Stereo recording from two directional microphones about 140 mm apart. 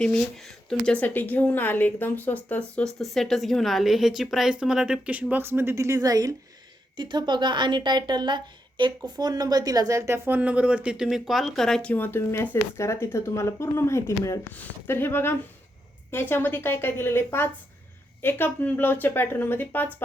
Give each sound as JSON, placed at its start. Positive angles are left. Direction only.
{"t": 0.0, "sound": "a woman's voice", "side_deg": 5}